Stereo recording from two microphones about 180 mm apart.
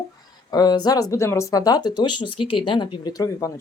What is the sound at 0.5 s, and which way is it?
Speech, 20° left (ahead or behind).